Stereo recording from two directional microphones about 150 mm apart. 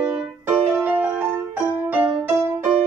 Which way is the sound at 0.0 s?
10° right (ahead or behind).